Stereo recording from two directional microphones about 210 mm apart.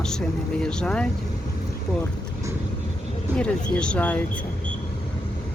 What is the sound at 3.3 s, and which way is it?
Speech, 5° left (ahead or behind).